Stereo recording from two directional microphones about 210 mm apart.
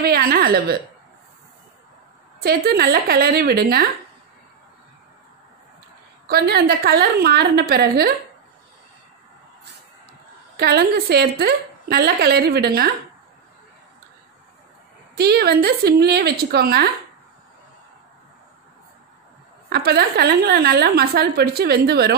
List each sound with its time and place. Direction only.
0.0 s a sound: 45° right (ahead or behind)
2.4 s a woman's voice: 45° right (ahead or behind)
6.2 s a woman's voice: 50° right (ahead or behind)
10.6 s a woman's voice: 50° right (ahead or behind)
15.1 s a woman's voice: 50° right (ahead or behind)
19.7 s a woman's voice: 50° right (ahead or behind)